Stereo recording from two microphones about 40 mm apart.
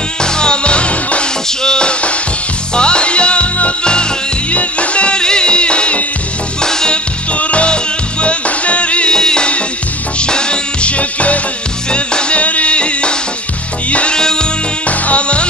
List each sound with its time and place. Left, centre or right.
0.2 s music: left
6.6 s music: centre
7.3 s music: left
9.1 s music: centre
11.9 s music: left
14.1 s music: centre
14.9 s music: left